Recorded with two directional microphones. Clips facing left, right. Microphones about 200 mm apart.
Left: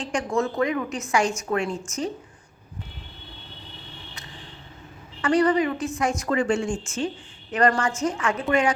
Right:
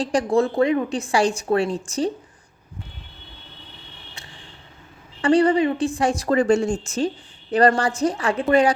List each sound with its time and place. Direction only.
0.0 s a woman's voice: 35° right (ahead or behind)
5.2 s a woman's voice: 30° right (ahead or behind)